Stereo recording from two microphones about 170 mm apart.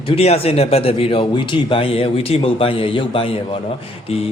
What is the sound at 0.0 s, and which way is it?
A man's voice, 35° left (ahead or behind).